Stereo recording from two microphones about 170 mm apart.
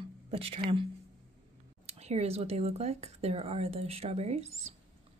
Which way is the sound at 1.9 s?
40° right (ahead or behind).